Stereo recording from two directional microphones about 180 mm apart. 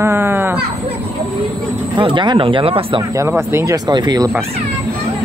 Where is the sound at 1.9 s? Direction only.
25° right (ahead or behind).